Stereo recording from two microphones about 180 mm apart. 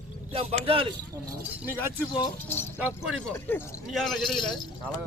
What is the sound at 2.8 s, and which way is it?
Speech, 5° right (ahead or behind).